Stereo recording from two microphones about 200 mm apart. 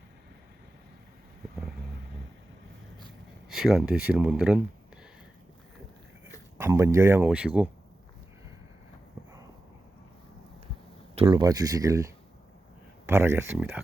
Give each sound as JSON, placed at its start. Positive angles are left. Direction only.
{"t": 3.5, "sound": "speech", "side_deg": 0}
{"t": 6.6, "sound": "speech", "side_deg": -15}
{"t": 11.1, "sound": "speech", "side_deg": -25}